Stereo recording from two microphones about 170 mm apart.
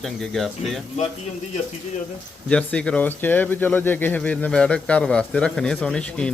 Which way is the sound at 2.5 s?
5° left (ahead or behind).